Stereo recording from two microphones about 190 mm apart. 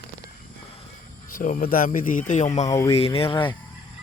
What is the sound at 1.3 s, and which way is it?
Speech, 45° left (ahead or behind).